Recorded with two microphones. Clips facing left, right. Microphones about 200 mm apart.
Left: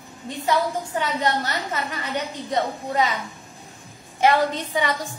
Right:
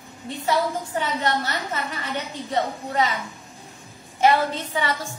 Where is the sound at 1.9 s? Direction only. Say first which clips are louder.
Left 2 dB; 15° left (ahead or behind).